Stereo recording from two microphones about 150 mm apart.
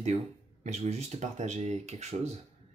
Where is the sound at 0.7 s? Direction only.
45° right (ahead or behind).